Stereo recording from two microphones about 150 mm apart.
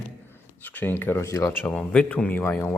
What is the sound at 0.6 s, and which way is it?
Speech, 10° left (ahead or behind).